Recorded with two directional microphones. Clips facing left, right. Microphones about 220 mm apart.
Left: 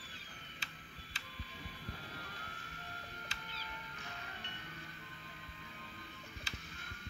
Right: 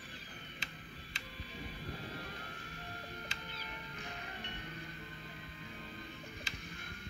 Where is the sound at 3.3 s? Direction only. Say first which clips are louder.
Right 3 dB; 20° right (ahead or behind).